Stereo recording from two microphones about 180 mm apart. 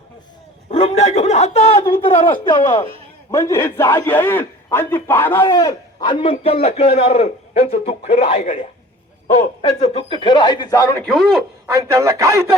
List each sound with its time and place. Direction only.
0.7 s a man's voice: 35° left (ahead or behind); by 11.7 s centre (ahead or behind)
11.9 s speech: 20° right (ahead or behind)